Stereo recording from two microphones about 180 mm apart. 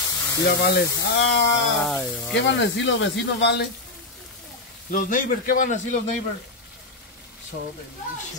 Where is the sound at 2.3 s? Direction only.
85° left.